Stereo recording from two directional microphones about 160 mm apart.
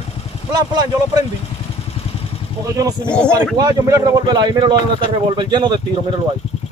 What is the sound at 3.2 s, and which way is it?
A man's voice, 20° right (ahead or behind).